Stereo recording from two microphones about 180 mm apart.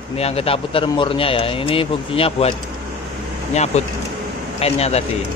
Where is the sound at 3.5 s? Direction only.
40° left (ahead or behind).